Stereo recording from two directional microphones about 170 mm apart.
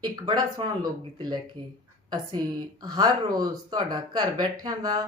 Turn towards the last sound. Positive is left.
turn(degrees=-20)  # may be behind; listen again after turning